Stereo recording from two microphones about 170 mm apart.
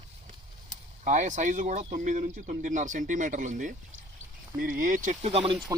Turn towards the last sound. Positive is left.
turn(degrees=-35)  # may be behind; listen again after turning